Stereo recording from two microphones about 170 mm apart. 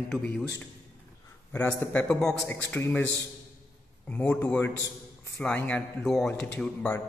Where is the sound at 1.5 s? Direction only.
10° left (ahead or behind).